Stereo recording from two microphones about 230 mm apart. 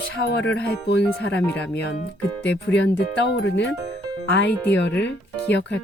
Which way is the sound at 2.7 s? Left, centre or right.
Left.